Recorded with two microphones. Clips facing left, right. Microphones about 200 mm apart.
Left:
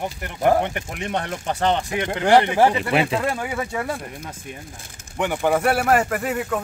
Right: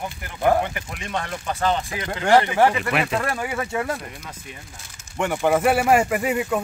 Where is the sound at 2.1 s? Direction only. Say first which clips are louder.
Left 1 dB; 20° left (ahead or behind).